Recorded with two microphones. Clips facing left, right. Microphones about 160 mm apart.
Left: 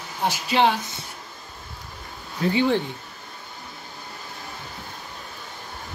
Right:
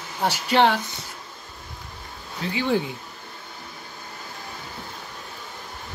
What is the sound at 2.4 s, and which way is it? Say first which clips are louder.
Speech: left 7 dB; 50° left (ahead or behind).